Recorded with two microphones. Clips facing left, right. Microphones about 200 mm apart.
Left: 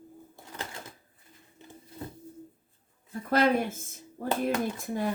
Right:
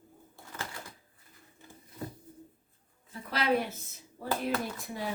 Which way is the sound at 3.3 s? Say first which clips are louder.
Left 5 dB; 50° left (ahead or behind).